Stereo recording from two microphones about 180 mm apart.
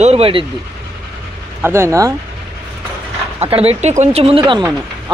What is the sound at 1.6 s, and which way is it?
Speech, 15° right (ahead or behind).